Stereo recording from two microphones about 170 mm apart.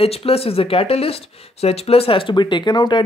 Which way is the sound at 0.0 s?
35° left (ahead or behind).